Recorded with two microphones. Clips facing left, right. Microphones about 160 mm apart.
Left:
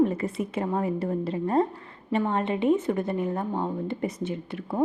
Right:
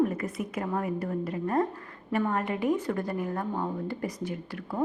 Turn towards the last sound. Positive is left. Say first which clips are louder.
# left 3 dB
turn(degrees=25)  # may be behind; listen again after turning